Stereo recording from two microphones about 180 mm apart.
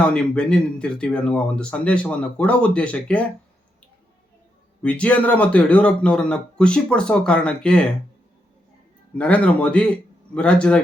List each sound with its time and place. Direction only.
0.0 s speech: 5° left (ahead or behind)
4.8 s speech: 5° left (ahead or behind)
9.1 s speech: 5° left (ahead or behind)